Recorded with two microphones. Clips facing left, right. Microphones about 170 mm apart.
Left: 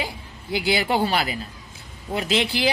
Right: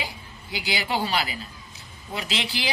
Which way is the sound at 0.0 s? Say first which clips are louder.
Left 4 dB; 50° left (ahead or behind).